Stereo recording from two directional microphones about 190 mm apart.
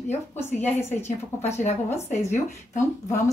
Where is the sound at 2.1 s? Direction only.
35° left (ahead or behind).